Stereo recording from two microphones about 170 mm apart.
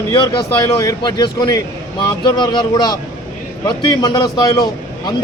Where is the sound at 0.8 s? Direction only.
20° left (ahead or behind).